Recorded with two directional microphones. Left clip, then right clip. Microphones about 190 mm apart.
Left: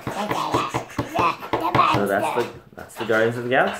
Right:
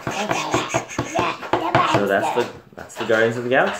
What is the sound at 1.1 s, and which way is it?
Music, 20° left (ahead or behind).